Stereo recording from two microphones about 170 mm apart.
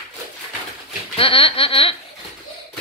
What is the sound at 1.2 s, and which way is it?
Snicker, 35° left (ahead or behind).